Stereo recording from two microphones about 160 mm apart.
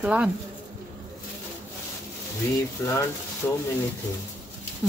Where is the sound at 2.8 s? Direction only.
20° left (ahead or behind).